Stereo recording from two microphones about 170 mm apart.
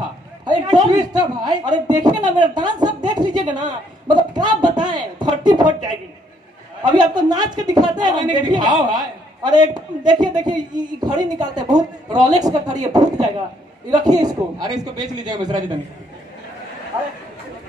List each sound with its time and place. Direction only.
0.7 s a man's voice: 25° right (ahead or behind)
6.8 s a man's voice: 25° right (ahead or behind)